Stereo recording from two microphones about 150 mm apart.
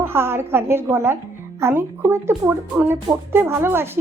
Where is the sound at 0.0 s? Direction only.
15° right (ahead or behind).